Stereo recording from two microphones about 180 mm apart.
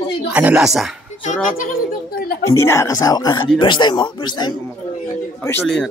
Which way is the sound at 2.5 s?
15° left (ahead or behind).